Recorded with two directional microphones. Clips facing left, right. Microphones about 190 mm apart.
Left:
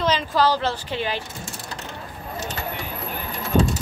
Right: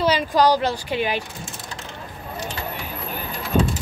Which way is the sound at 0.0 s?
15° right (ahead or behind).